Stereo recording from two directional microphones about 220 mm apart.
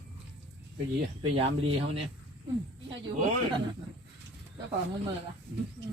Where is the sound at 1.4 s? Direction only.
25° right (ahead or behind).